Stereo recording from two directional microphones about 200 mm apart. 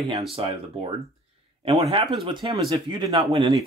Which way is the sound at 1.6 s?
30° right (ahead or behind).